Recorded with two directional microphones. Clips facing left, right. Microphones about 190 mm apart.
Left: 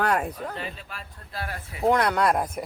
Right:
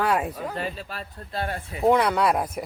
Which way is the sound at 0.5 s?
40° right (ahead or behind).